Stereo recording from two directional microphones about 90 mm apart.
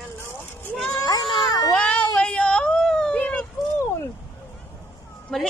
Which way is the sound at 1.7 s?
10° left (ahead or behind).